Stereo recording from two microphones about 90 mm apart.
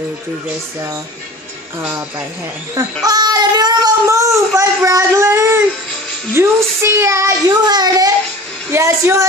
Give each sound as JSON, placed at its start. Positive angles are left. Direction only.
{"t": 2.7, "sound": "speech", "side_deg": -40}
{"t": 4.1, "sound": "speech", "side_deg": -35}
{"t": 6.3, "sound": "a sound", "side_deg": -30}
{"t": 7.4, "sound": "a child's voice", "side_deg": -50}
{"t": 8.7, "sound": "speech", "side_deg": -30}